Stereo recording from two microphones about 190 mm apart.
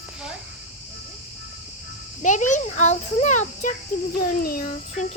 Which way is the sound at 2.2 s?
40° left (ahead or behind).